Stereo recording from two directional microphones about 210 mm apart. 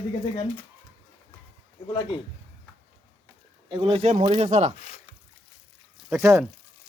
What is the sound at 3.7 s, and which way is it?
Speech, 25° right (ahead or behind).